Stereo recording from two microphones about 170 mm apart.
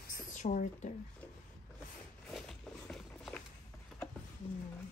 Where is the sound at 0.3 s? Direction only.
45° left (ahead or behind).